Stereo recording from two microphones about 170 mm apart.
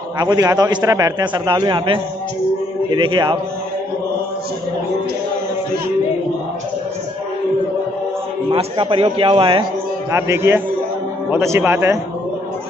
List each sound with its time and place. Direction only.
0.2 s a man's voice: 20° right (ahead or behind)
8.5 s a man's voice: 30° right (ahead or behind)
10.1 s speech: 15° right (ahead or behind)